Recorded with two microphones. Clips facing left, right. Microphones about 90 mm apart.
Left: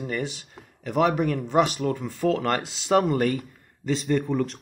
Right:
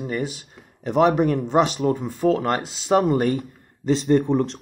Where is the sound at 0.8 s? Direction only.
30° right (ahead or behind).